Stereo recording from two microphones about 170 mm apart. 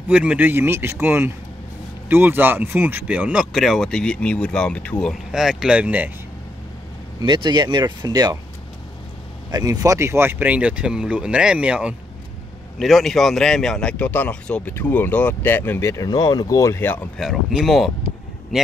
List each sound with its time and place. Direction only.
0.1 s speech: 10° right (ahead or behind)
7.2 s speech: 25° right (ahead or behind)
9.5 s a man's voice: 20° right (ahead or behind); by 17.1 s 10° left (ahead or behind)
17.2 s speech: centre (ahead or behind)